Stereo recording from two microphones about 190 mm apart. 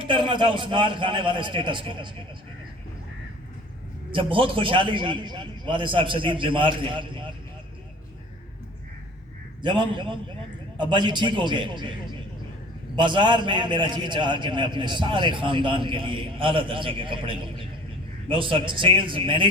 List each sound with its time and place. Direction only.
0.0 s a man's voice: 25° right (ahead or behind)
4.1 s a man's voice: 30° right (ahead or behind)
9.6 s a man's voice: 25° right (ahead or behind)
13.0 s a man's voice: 25° right (ahead or behind)